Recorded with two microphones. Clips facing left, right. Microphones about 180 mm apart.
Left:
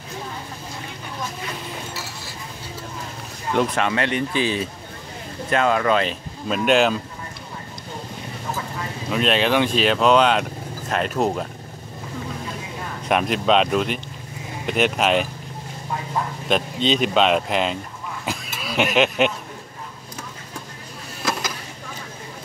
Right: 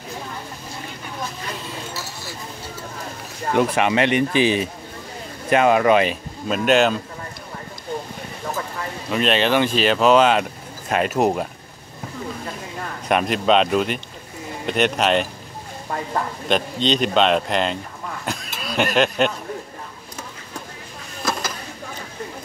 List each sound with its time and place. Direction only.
3.5 s speech: 15° right (ahead or behind)
6.5 s speech: centre (ahead or behind)
9.1 s speech: centre (ahead or behind)
13.1 s speech: centre (ahead or behind)
16.4 s speech: centre (ahead or behind)
18.2 s a sound: 5° left (ahead or behind)